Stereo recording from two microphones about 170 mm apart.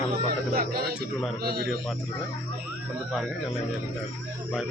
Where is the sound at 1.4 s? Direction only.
65° right (ahead or behind).